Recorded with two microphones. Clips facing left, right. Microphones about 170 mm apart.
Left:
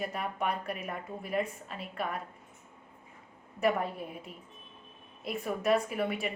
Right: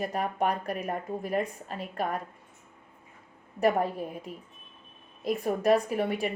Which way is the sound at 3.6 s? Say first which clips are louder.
Right 4 dB; 40° right (ahead or behind).